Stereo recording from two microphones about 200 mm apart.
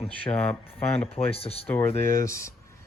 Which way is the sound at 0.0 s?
5° left (ahead or behind).